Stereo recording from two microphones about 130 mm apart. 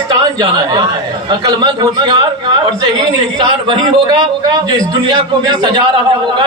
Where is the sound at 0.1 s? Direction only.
30° right (ahead or behind).